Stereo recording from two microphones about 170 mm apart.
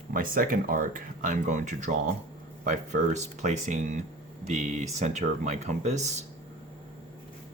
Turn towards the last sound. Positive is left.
turn(degrees=-40)  # may be behind; listen again after turning